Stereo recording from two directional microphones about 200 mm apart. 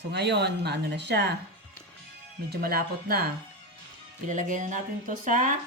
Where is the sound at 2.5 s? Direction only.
50° right (ahead or behind).